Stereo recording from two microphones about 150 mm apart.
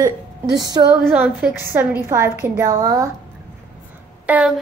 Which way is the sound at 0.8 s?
25° right (ahead or behind).